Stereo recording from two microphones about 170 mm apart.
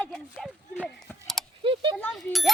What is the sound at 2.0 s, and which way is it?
Speech, centre (ahead or behind).